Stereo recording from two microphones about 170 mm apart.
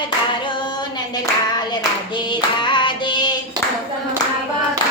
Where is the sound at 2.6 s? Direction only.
25° left (ahead or behind).